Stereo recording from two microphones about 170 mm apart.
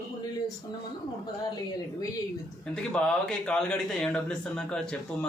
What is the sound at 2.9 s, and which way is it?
A man's voice, 5° left (ahead or behind).